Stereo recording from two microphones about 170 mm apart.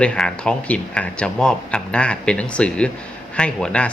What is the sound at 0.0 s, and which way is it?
Speech, 5° left (ahead or behind).